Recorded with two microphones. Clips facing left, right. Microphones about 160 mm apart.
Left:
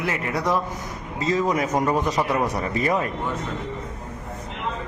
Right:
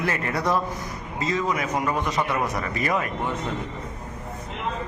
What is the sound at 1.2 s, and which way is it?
A man's voice, 35° left (ahead or behind).